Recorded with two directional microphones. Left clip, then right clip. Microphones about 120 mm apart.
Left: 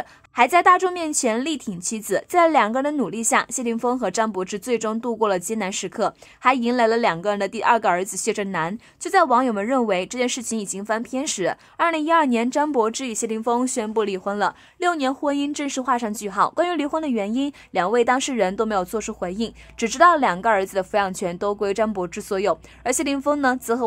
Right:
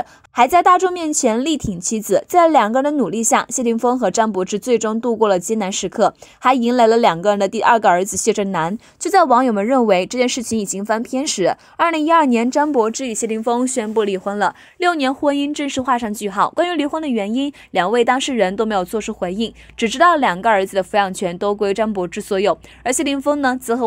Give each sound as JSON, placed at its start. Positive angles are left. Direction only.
{"t": 0.4, "sound": "a woman's voice", "side_deg": -40}